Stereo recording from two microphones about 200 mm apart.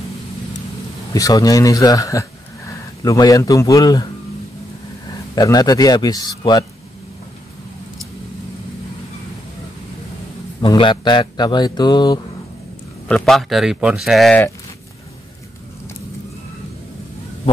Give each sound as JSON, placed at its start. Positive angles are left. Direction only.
{"t": 1.1, "sound": "speech", "side_deg": 20}
{"t": 5.3, "sound": "speech", "side_deg": 20}
{"t": 10.6, "sound": "speech", "side_deg": 25}
{"t": 13.1, "sound": "speech", "side_deg": 0}